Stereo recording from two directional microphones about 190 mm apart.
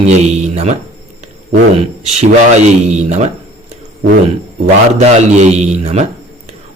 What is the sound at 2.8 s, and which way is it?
Speech, 35° right (ahead or behind).